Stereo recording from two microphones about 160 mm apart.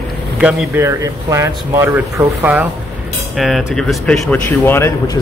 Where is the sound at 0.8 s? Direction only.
20° right (ahead or behind).